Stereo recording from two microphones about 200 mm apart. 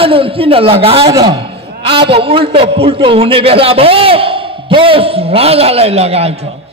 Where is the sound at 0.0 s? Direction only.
25° right (ahead or behind).